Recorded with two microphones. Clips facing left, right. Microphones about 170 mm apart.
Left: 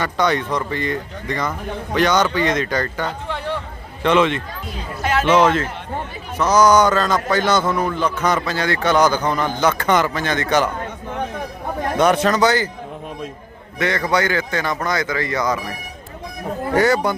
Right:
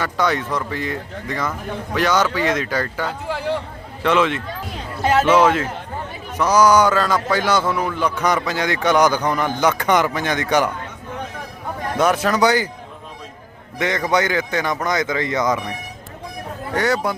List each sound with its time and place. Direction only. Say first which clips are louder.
0.0 s speech: left 1 dB; 5° right (ahead or behind)
5.0 s speech: right 3 dB; 40° right (ahead or behind)
5.3 s speech: left 3 dB; 10° right (ahead or behind)
11.9 s speech: left 1 dB; 5° right (ahead or behind)
13.7 s speech: even; 20° right (ahead or behind)
16.7 s speech: left 3 dB; centre (ahead or behind)